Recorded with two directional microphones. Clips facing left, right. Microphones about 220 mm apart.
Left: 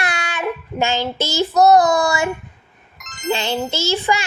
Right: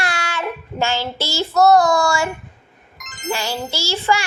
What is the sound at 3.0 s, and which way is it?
Music, centre (ahead or behind).